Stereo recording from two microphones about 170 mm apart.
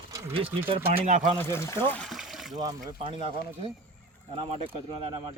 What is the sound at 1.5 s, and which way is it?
Speech, 15° left (ahead or behind).